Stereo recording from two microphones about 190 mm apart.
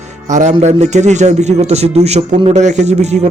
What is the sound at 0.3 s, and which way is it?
Speech, 40° right (ahead or behind).